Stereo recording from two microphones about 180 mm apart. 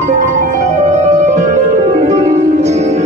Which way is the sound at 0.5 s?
40° right (ahead or behind).